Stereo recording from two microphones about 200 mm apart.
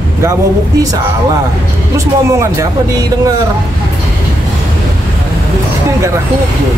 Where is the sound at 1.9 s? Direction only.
15° right (ahead or behind).